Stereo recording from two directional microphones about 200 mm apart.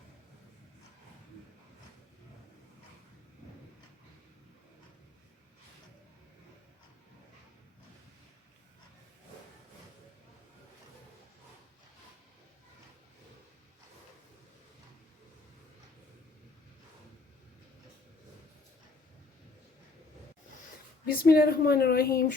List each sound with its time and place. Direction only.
21.1 s speech: 50° left (ahead or behind)